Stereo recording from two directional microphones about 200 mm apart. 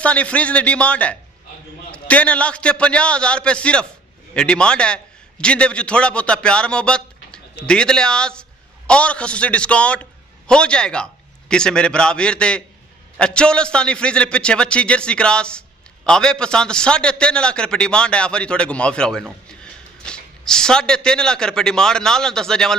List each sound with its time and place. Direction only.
0.0 s a man's voice: 5° left (ahead or behind)